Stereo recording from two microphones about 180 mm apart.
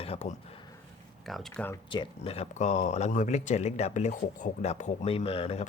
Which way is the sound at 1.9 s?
30° left (ahead or behind).